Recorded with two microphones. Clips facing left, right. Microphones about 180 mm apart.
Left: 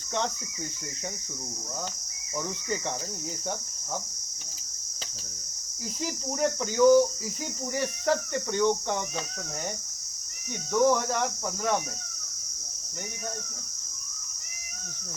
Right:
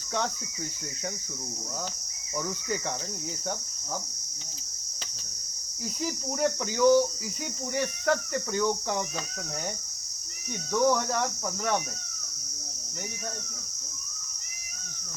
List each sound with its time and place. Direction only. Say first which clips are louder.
6.1 s speech: even; centre (ahead or behind)
8.1 s speech: left 1 dB; 25° left (ahead or behind)
10.7 s speech: left 1 dB; centre (ahead or behind)